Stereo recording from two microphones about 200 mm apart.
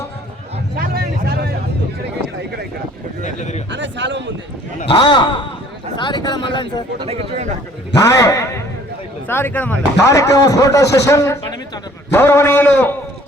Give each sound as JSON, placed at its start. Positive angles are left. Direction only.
{"t": 0.8, "sound": "a sound", "side_deg": -50}
{"t": 3.2, "sound": "speech", "side_deg": 35}
{"t": 3.7, "sound": "a man's voice", "side_deg": -65}
{"t": 4.9, "sound": "speech", "side_deg": 20}
{"t": 7.0, "sound": "speech", "side_deg": -30}
{"t": 8.0, "sound": "speech", "side_deg": 15}